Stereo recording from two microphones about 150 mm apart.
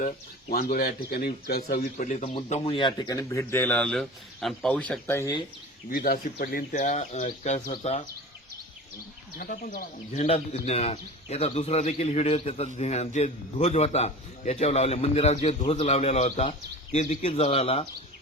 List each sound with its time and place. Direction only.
0.5 s speech: 75° left (ahead or behind); by 2.3 s 55° left (ahead or behind)
2.5 s speech: 35° left (ahead or behind); by 5.3 s 15° left (ahead or behind)
5.9 s speech: 85° left; by 7.7 s 55° left (ahead or behind)
9.4 s speech: 65° left (ahead or behind); by 17.8 s 40° left (ahead or behind)